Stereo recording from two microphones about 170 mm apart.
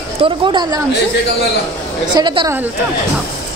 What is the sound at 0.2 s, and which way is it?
Speech, 25° right (ahead or behind).